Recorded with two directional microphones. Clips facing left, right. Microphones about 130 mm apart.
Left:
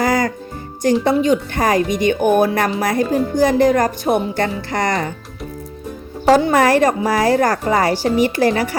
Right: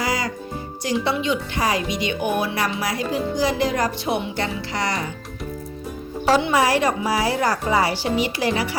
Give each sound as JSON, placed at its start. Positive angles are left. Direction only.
{"t": 0.0, "sound": "music", "side_deg": 50}
{"t": 1.0, "sound": "speech", "side_deg": 45}
{"t": 6.2, "sound": "speech", "side_deg": 45}